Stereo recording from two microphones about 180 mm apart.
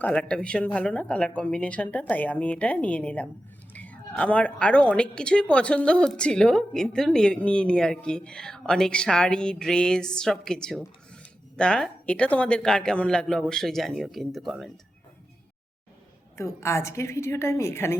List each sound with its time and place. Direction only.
0.0 s a woman's voice: 5° left (ahead or behind)
16.4 s a woman's voice: 15° left (ahead or behind)